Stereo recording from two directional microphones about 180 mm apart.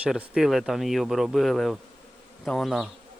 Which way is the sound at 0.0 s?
5° right (ahead or behind).